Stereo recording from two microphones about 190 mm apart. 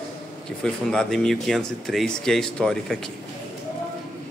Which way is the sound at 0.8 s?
Centre (ahead or behind).